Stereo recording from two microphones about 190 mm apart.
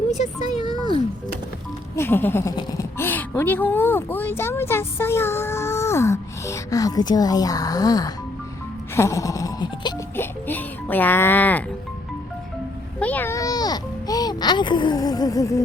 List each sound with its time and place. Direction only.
0.5 s music: 20° right (ahead or behind)
2.0 s speech: 10° left (ahead or behind)
9.0 s wail: 15° left (ahead or behind)
10.4 s speech: 10° left (ahead or behind)
13.0 s music: 10° left (ahead or behind)